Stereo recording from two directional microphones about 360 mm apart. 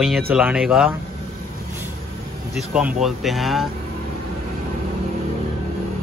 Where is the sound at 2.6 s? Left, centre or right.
Centre.